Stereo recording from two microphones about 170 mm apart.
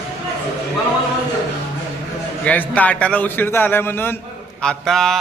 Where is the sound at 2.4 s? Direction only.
10° left (ahead or behind).